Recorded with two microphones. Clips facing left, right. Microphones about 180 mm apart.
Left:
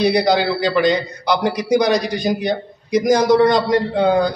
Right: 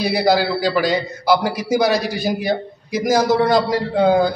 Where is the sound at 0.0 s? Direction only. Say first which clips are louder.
Left 1 dB; 5° right (ahead or behind).